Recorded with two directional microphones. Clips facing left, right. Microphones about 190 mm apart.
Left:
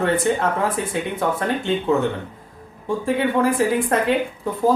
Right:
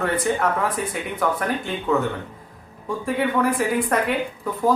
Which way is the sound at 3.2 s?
25° left (ahead or behind).